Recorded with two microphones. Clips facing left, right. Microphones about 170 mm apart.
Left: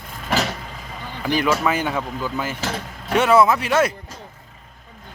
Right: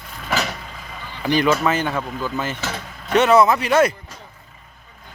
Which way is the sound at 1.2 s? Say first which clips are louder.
Right 2 dB; 5° left (ahead or behind).